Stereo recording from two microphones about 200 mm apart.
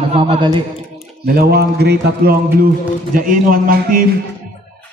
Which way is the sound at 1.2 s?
50° right (ahead or behind).